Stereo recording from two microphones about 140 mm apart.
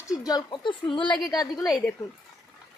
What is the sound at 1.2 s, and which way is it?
Speech, 25° left (ahead or behind).